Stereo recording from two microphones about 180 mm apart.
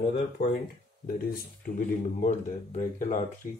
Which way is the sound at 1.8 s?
45° left (ahead or behind).